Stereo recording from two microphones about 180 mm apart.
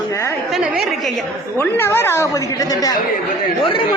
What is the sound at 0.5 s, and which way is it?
Speech, 5° right (ahead or behind).